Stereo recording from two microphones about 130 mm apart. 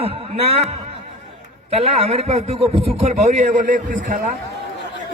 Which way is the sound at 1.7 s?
55° right (ahead or behind).